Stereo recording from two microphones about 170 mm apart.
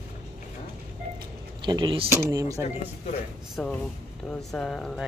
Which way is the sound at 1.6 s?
25° right (ahead or behind).